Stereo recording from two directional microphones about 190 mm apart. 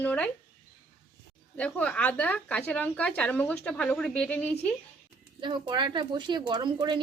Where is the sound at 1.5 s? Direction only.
5° left (ahead or behind).